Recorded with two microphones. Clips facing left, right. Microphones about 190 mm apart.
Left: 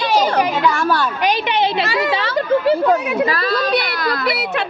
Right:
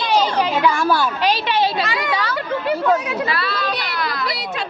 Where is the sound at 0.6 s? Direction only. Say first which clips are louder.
Even; 15° right (ahead or behind).